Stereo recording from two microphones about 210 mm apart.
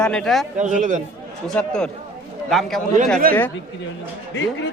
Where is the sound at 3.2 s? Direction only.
45° right (ahead or behind).